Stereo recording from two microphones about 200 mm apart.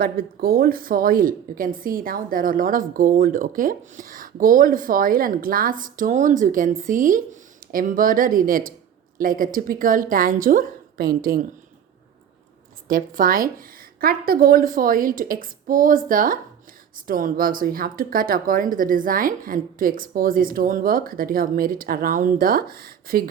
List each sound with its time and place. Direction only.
0.0 s a woman's voice: 50° right (ahead or behind)
12.9 s a woman's voice: 45° right (ahead or behind)